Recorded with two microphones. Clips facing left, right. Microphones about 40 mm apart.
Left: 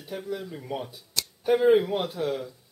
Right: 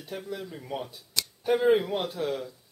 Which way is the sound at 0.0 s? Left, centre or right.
Centre.